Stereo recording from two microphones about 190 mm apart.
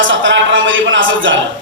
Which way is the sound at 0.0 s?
80° right.